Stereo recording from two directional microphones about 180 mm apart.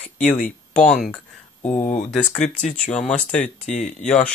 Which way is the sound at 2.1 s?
5° left (ahead or behind).